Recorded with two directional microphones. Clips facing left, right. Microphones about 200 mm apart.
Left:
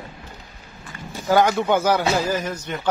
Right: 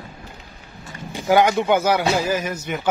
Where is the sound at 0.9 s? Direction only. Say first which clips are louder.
Right 2 dB; 15° right (ahead or behind).